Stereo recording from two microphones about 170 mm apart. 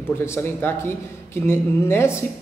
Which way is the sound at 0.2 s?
15° left (ahead or behind).